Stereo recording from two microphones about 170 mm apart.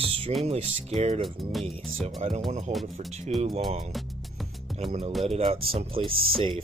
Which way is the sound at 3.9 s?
Centre (ahead or behind).